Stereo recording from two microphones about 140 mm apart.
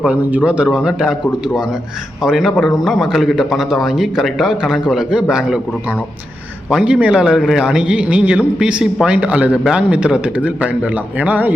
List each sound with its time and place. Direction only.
0.0 s a man's voice: 10° right (ahead or behind)
2.2 s a man's voice: centre (ahead or behind)
6.7 s a man's voice: 5° right (ahead or behind)